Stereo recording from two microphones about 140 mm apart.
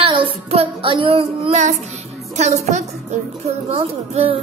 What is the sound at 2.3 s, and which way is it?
A woman's voice, 55° right (ahead or behind).